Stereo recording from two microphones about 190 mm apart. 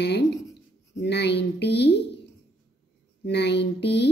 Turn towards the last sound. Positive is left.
turn(degrees=60)  # may be behind; listen again after turning